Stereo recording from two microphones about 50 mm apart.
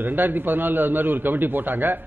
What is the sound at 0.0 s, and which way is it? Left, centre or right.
A man's voice, right.